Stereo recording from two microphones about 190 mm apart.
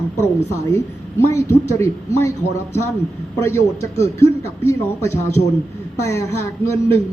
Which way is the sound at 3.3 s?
15° left (ahead or behind).